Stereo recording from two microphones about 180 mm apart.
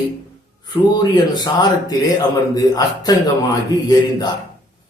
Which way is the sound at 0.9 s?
25° left (ahead or behind).